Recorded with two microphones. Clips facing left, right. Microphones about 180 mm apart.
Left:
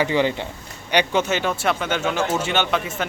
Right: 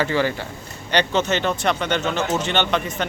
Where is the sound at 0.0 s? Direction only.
15° left (ahead or behind).